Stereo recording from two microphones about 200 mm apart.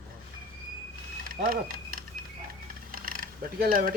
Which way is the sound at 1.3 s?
45° right (ahead or behind).